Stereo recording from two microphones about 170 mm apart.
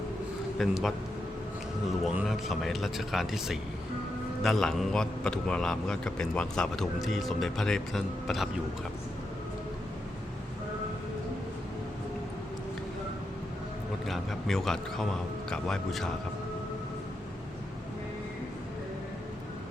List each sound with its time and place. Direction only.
0.6 s a man's voice: centre (ahead or behind)
2.1 s a man's voice: centre (ahead or behind)
14.1 s a man's voice: centre (ahead or behind)